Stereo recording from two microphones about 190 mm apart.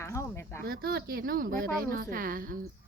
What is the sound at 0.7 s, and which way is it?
A woman's voice, 50° right (ahead or behind).